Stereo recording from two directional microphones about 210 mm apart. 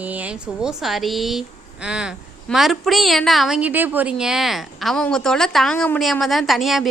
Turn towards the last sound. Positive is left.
turn(degrees=0)  # may be behind; listen again after turning